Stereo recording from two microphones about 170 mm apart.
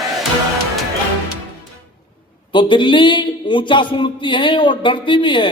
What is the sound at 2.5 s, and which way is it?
A man's voice, 30° left (ahead or behind).